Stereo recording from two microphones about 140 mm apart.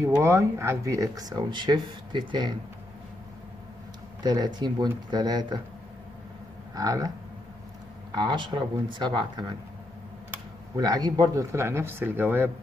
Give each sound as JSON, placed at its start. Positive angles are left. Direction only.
{"t": 0.0, "sound": "speech", "side_deg": -20}
{"t": 4.2, "sound": "speech", "side_deg": -30}
{"t": 6.7, "sound": "speech", "side_deg": -25}
{"t": 8.1, "sound": "speech", "side_deg": -30}
{"t": 10.8, "sound": "speech", "side_deg": -30}